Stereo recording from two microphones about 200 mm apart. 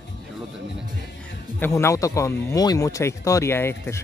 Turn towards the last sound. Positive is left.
turn(degrees=10)  # may be behind; listen again after turning